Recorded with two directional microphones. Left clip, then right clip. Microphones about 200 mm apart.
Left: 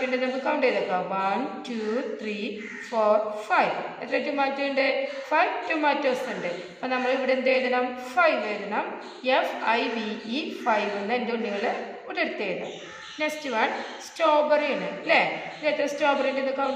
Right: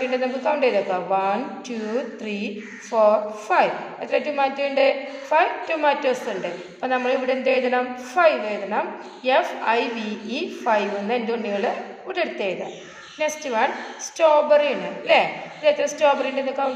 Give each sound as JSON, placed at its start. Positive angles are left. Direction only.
{"t": 0.4, "sound": "a woman's voice", "side_deg": -50}
{"t": 2.9, "sound": "a woman's voice", "side_deg": -50}